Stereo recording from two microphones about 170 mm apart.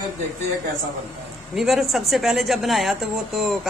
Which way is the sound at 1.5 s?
Centre (ahead or behind).